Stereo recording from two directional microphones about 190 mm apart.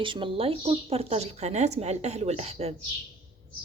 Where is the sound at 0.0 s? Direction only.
25° right (ahead or behind).